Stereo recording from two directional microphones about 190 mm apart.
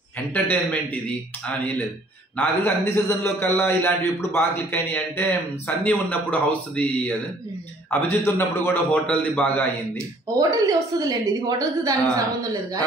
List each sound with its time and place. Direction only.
0.3 s a man's voice: 5° left (ahead or behind)
2.3 s a man's voice: 10° left (ahead or behind)
10.3 s a woman's voice: 20° right (ahead or behind)